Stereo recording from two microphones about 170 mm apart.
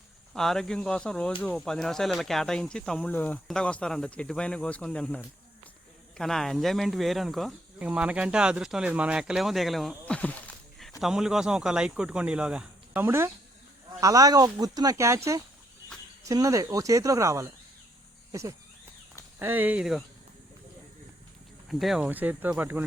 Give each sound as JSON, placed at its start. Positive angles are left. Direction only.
{"t": 0.3, "sound": "speech", "side_deg": 0}
{"t": 21.7, "sound": "speech", "side_deg": 0}